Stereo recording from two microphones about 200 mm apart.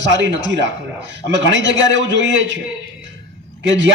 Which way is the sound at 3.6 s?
65° right (ahead or behind).